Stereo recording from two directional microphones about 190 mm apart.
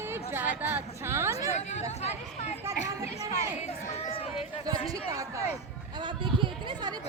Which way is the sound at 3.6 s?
35° left (ahead or behind).